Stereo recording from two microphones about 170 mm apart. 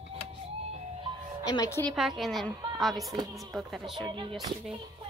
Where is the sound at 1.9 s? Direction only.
Centre (ahead or behind).